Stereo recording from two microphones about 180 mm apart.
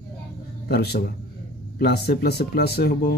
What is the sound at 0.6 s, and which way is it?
Speech, 60° left (ahead or behind).